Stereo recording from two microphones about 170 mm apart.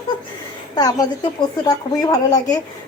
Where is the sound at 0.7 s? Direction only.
20° left (ahead or behind).